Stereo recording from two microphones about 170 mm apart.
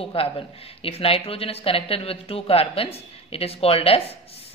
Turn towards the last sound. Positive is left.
turn(degrees=35)  # may be behind; listen again after turning